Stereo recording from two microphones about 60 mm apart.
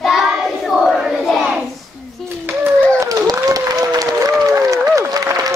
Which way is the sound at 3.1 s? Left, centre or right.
Right.